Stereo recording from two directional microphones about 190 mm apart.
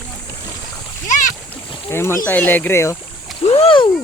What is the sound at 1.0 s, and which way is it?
Boat, 40° left (ahead or behind).